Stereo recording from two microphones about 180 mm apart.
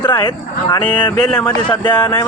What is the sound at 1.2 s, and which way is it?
Speech, 5° left (ahead or behind).